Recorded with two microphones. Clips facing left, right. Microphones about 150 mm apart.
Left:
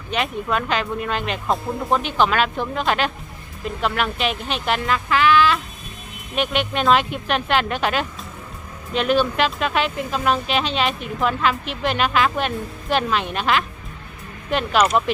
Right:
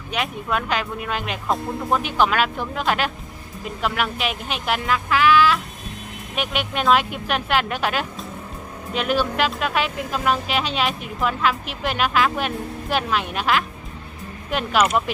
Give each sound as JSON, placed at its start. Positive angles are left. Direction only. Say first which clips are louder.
{"t": 0.1, "sound": "speech", "louder": "left 2 dB", "side_deg": -5}